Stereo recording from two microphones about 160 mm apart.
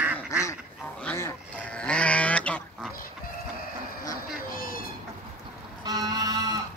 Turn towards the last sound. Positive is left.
turn(degrees=-25)  # may be behind; listen again after turning